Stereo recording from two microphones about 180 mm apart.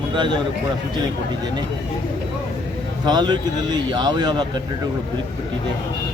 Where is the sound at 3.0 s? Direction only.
25° right (ahead or behind).